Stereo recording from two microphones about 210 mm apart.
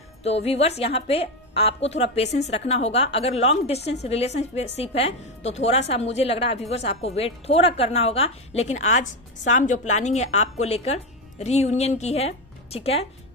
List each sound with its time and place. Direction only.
0.2 s a woman's voice: 30° left (ahead or behind)